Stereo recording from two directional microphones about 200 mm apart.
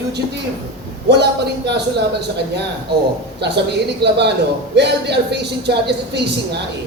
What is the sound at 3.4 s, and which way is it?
Speech, 55° right (ahead or behind).